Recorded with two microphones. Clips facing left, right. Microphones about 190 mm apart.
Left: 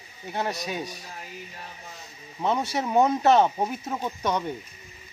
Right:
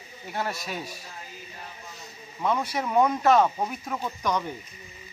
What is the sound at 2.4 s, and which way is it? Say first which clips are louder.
Speech: left 1 dB; 25° left (ahead or behind).